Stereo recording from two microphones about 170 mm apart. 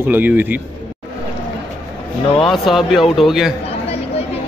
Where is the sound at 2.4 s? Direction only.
Centre (ahead or behind).